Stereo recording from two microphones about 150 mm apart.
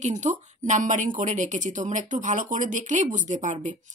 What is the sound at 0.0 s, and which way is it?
A woman's voice, 55° right (ahead or behind).